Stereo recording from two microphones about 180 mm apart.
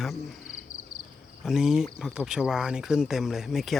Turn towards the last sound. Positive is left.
turn(degrees=0)  # may be behind; listen again after turning